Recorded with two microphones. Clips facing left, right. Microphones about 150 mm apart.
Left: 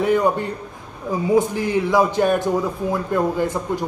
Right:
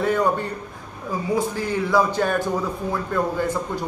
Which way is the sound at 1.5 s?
15° left (ahead or behind).